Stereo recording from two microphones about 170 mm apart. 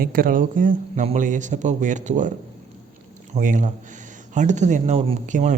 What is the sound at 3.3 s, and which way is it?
Speech, 50° right (ahead or behind).